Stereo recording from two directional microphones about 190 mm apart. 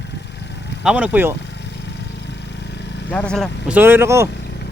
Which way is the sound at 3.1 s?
5° left (ahead or behind).